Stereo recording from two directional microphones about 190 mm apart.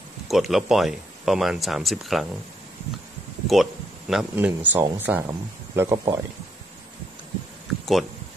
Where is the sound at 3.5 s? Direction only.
Centre (ahead or behind).